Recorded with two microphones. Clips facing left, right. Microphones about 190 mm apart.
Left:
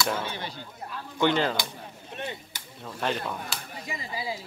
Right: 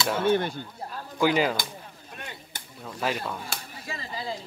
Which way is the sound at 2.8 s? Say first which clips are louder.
Even; 5° right (ahead or behind).